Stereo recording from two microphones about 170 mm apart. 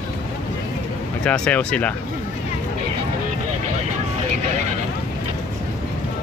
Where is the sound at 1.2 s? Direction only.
5° left (ahead or behind).